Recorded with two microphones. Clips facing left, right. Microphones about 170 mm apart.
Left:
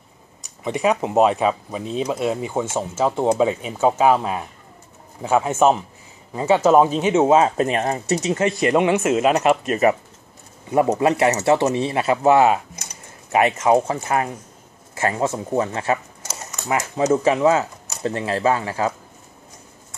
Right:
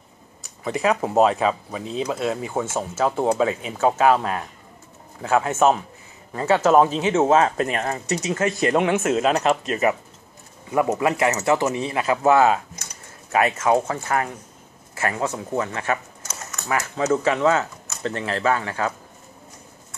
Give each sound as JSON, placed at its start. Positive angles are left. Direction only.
{"t": 0.7, "sound": "speech", "side_deg": 15}
{"t": 1.7, "sound": "speech", "side_deg": 30}
{"t": 2.0, "sound": "speech", "side_deg": 15}
{"t": 8.7, "sound": "speech", "side_deg": 0}
{"t": 9.7, "sound": "speech", "side_deg": 35}
{"t": 10.7, "sound": "speech", "side_deg": 25}
{"t": 12.2, "sound": "speech", "side_deg": 15}